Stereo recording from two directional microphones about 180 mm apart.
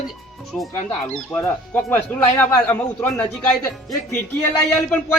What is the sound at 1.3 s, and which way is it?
Speech, 10° left (ahead or behind).